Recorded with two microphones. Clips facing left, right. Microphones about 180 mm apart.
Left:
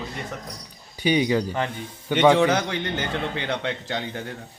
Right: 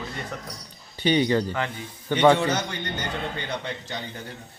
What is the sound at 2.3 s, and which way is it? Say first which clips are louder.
A man's voice: left 5 dB; 90° left.